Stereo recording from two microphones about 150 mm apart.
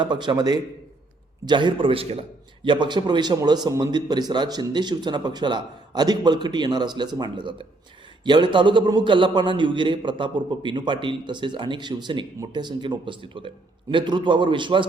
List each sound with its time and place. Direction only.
0.0 s a man's voice: 30° right (ahead or behind)